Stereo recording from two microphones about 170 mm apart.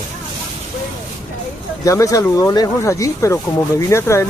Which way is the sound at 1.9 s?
20° left (ahead or behind).